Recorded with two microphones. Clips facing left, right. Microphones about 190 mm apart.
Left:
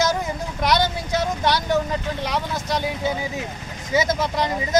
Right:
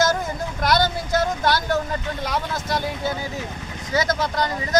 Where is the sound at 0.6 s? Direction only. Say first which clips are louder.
Even; 15° left (ahead or behind).